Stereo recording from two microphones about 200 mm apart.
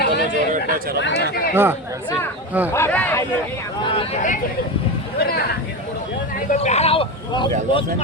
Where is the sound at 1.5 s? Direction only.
10° right (ahead or behind).